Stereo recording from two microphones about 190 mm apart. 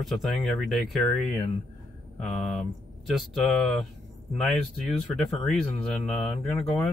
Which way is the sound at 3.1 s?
Centre (ahead or behind).